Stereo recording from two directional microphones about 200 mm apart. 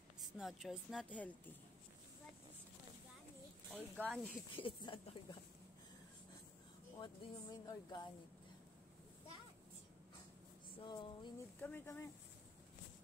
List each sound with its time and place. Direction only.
0.2 s speech: centre (ahead or behind)
3.7 s speech: 5° left (ahead or behind)
4.6 s speech: 25° left (ahead or behind)
7.0 s speech: 20° left (ahead or behind)
10.8 s speech: 25° left (ahead or behind)
11.6 s speech: 10° left (ahead or behind)